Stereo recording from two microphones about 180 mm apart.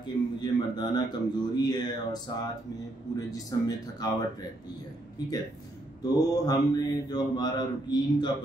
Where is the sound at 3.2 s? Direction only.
20° left (ahead or behind).